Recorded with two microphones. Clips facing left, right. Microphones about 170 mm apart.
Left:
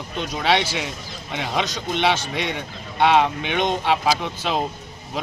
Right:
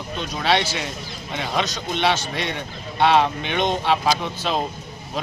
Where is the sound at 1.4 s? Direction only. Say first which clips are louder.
Even; 15° left (ahead or behind).